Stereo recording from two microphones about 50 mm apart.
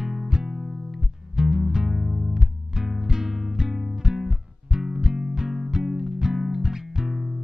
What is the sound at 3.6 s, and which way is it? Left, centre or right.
Music, centre.